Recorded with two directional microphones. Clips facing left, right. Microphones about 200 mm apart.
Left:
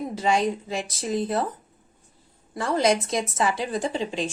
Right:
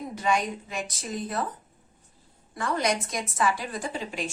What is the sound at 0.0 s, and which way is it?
Speech, 25° left (ahead or behind).